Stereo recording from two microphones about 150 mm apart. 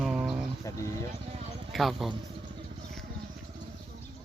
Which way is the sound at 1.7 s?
Centre (ahead or behind).